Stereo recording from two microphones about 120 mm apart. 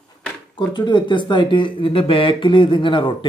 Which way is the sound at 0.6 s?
40° left (ahead or behind).